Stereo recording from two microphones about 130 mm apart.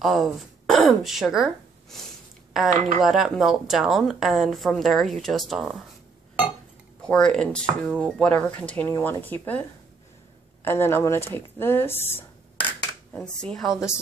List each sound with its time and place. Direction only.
0.0 s a woman's voice: centre (ahead or behind)
7.0 s speech: 5° left (ahead or behind)